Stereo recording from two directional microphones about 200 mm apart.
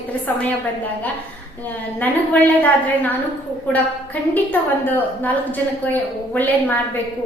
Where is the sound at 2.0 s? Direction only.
10° left (ahead or behind).